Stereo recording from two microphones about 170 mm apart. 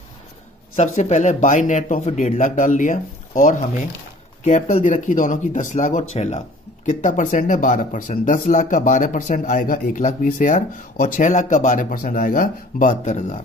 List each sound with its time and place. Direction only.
0.7 s speech: 40° left (ahead or behind)